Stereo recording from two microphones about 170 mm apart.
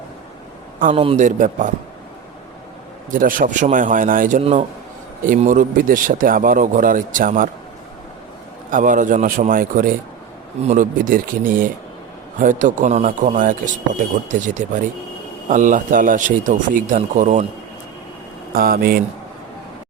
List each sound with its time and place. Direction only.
0.8 s speech: 50° right (ahead or behind)
3.1 s speech: 55° right (ahead or behind)
8.7 s speech: 50° right (ahead or behind)
18.5 s speech: 60° right (ahead or behind)